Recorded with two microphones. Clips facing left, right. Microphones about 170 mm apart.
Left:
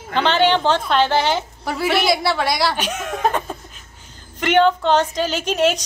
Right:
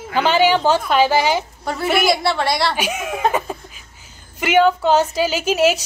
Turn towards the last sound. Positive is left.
turn(degrees=-5)  # may be behind; listen again after turning